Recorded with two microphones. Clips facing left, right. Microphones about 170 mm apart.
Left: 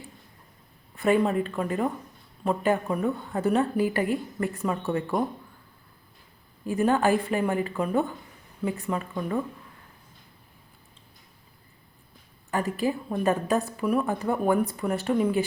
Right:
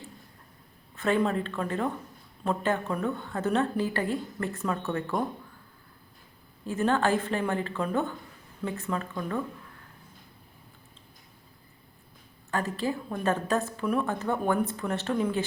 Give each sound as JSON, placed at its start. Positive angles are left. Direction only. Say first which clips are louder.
{"t": 0.9, "sound": "a woman's voice", "louder": "left 3 dB", "side_deg": 15}
{"t": 2.4, "sound": "a woman's voice", "louder": "left 3 dB", "side_deg": 10}
{"t": 6.7, "sound": "a woman's voice", "louder": "left 3 dB", "side_deg": 15}
{"t": 12.5, "sound": "a woman's voice", "louder": "left 3 dB", "side_deg": 15}